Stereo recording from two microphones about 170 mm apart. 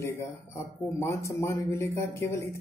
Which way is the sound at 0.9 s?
15° left (ahead or behind).